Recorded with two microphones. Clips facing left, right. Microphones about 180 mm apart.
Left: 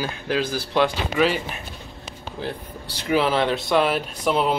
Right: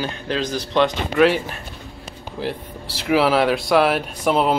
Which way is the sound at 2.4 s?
Centre (ahead or behind).